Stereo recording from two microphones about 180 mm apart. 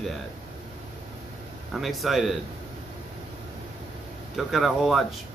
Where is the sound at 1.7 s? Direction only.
Centre (ahead or behind).